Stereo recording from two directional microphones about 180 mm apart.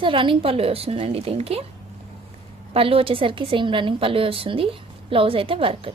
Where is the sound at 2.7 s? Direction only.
30° right (ahead or behind).